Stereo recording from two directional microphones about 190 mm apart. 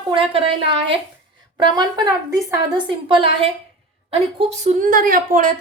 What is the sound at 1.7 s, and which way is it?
A woman's voice, 20° right (ahead or behind).